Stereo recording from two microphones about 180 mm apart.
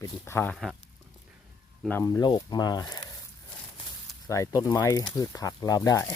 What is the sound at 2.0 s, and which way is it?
Speech, 20° left (ahead or behind).